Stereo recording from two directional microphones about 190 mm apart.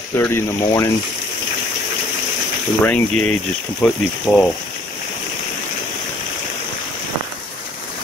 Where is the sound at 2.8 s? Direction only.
10° left (ahead or behind).